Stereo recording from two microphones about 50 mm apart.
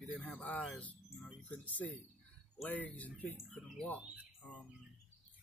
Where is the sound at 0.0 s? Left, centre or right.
Left.